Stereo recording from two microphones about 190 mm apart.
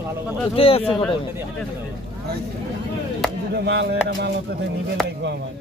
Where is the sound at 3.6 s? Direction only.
60° right (ahead or behind).